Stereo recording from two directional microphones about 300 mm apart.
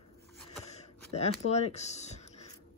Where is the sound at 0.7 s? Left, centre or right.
Left.